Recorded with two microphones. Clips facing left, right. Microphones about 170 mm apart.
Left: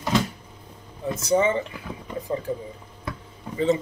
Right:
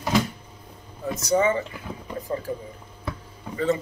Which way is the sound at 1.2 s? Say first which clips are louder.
Even; 25° left (ahead or behind).